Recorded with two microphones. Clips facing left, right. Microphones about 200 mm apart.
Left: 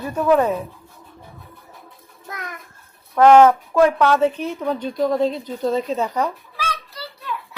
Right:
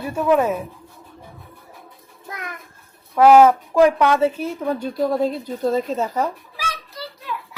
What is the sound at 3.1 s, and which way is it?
A woman's voice, 5° right (ahead or behind).